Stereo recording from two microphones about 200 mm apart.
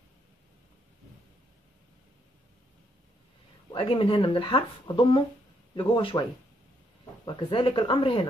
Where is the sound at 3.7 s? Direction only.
25° left (ahead or behind).